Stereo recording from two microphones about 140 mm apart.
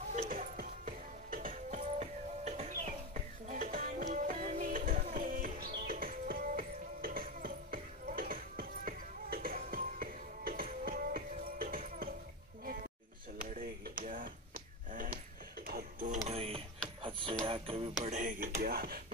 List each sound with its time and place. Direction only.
0.1 s music: 60° right (ahead or behind); by 12.1 s 90° right
13.5 s chop: 75° right (ahead or behind)
14.0 s a sound: 80° right
15.6 s music: 80° right
16.3 s printer: 45° right (ahead or behind)
17.0 s music: 40° right (ahead or behind)
18.0 s speech: 65° right (ahead or behind); by 18.9 s 90° right